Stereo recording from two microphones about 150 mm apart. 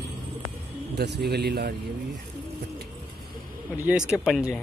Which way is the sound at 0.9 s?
90° right.